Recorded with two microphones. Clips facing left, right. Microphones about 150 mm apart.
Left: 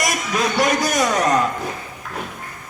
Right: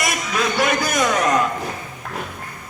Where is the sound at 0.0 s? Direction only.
40° left (ahead or behind).